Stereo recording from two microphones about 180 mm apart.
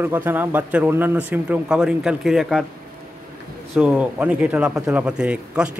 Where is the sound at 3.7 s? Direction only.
5° right (ahead or behind).